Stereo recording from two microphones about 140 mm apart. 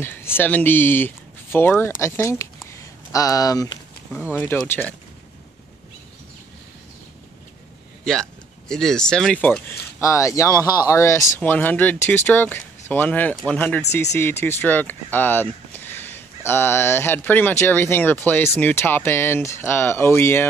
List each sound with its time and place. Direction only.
0.0 s speech: 15° left (ahead or behind)
4.3 s speech: 15° left (ahead or behind)
8.0 s speech: 5° left (ahead or behind)